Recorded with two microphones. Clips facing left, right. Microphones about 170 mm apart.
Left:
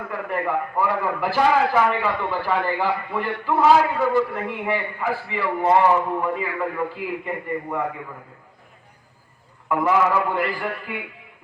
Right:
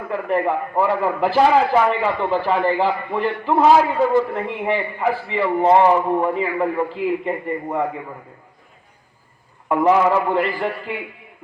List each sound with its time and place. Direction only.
0.1 s a man's voice: 20° right (ahead or behind)
9.6 s a man's voice: 25° right (ahead or behind)